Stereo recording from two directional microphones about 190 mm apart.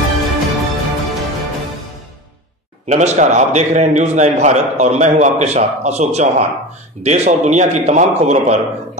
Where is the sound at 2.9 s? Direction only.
35° right (ahead or behind).